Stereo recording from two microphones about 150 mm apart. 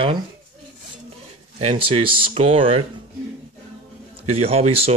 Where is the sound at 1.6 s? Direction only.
40° right (ahead or behind).